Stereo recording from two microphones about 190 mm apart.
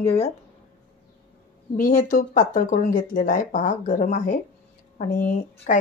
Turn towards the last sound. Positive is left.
turn(degrees=45)  # may be behind; listen again after turning